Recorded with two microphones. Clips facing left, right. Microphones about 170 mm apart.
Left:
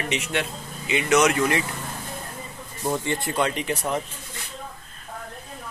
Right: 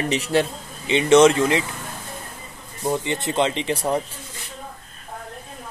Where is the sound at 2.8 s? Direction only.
15° right (ahead or behind).